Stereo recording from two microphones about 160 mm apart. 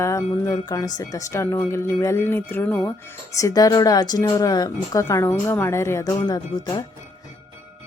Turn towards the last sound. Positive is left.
turn(degrees=25)  # may be behind; listen again after turning